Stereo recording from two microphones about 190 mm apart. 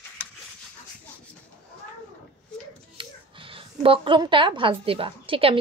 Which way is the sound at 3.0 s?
30° right (ahead or behind).